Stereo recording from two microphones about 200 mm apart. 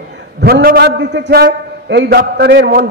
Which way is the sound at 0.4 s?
50° right (ahead or behind).